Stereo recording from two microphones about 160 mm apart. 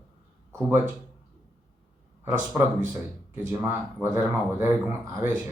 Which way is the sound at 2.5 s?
15° right (ahead or behind).